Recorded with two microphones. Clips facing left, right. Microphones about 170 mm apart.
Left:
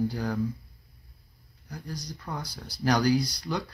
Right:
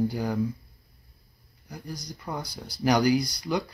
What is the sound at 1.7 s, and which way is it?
Speech, 10° right (ahead or behind).